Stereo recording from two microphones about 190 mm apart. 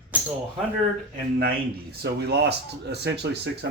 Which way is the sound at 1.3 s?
55° right (ahead or behind).